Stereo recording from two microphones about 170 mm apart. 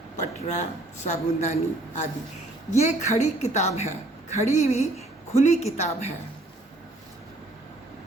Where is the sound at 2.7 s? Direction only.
45° left (ahead or behind).